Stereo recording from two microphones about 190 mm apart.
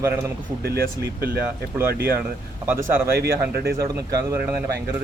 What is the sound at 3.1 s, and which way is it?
Speech, 55° right (ahead or behind).